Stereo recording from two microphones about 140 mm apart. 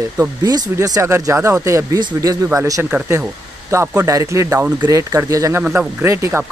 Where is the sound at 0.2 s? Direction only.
25° right (ahead or behind).